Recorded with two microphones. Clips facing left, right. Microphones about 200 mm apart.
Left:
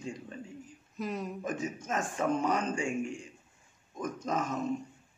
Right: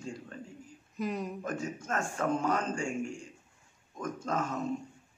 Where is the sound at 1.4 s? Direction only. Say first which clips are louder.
Left 1 dB; 15° left (ahead or behind).